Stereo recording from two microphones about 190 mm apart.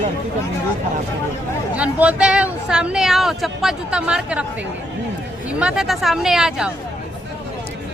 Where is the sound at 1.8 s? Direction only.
5° right (ahead or behind).